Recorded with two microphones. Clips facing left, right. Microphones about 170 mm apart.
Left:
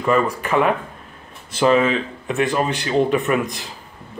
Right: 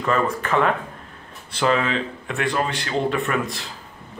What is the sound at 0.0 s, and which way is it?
Speech, 15° left (ahead or behind).